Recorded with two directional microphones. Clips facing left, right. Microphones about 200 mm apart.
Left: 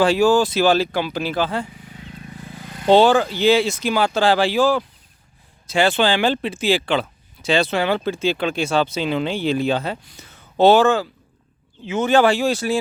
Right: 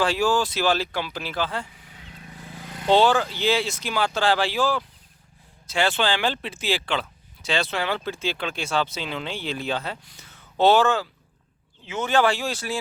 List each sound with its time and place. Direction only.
0.0 s speech: 10° left (ahead or behind)
1.8 s wild animals: centre (ahead or behind)
2.6 s vehicle: 20° right (ahead or behind)
3.0 s speech: 10° left (ahead or behind)